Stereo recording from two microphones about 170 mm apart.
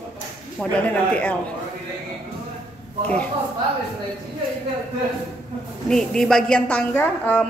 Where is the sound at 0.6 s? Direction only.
10° left (ahead or behind).